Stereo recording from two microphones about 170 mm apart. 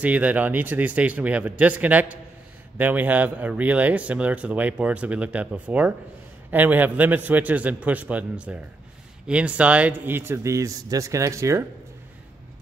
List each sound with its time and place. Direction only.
0.0 s speech: 10° right (ahead or behind)